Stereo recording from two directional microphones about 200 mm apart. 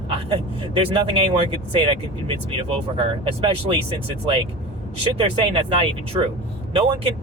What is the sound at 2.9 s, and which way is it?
Speech, 25° right (ahead or behind).